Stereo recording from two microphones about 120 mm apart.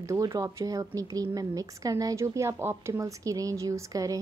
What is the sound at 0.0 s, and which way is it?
A woman's voice, 25° right (ahead or behind).